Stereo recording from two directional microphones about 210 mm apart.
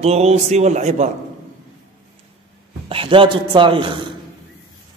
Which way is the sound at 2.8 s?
25° right (ahead or behind).